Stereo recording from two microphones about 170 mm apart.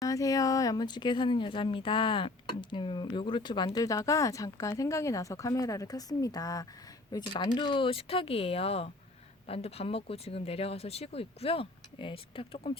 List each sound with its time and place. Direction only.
0.0 s speech: 20° left (ahead or behind)